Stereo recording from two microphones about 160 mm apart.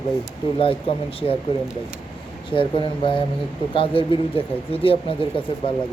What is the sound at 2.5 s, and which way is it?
Speech, 30° left (ahead or behind).